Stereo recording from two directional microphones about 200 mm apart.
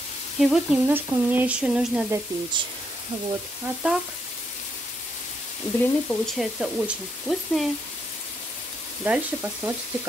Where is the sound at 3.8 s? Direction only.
5° right (ahead or behind).